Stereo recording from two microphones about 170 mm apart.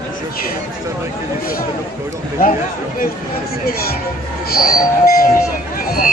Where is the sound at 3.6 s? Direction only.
60° left (ahead or behind).